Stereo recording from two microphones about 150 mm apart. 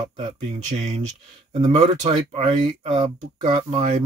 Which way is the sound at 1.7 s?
50° right (ahead or behind).